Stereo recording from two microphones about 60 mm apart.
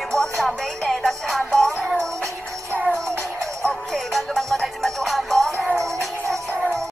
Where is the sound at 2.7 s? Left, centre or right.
Centre.